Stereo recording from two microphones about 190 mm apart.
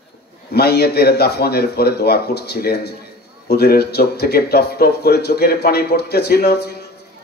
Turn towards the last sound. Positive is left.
turn(degrees=60)  # may be behind; listen again after turning